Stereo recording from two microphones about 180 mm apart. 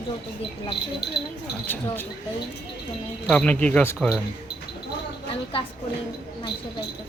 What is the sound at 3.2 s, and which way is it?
Speech, 5° left (ahead or behind).